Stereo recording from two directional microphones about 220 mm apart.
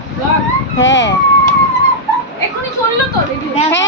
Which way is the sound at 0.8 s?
55° left (ahead or behind).